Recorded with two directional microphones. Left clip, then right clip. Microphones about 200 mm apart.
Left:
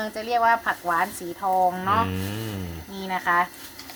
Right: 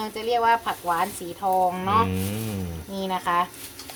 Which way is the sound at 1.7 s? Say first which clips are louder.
Right 1 dB; 10° left (ahead or behind).